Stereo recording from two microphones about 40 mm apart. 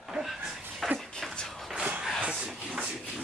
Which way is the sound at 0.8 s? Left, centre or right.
Centre.